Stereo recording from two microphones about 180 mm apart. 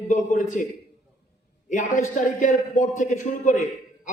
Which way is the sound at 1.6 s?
45° left (ahead or behind).